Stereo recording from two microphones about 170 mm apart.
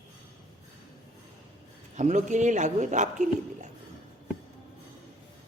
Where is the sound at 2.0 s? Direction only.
45° right (ahead or behind).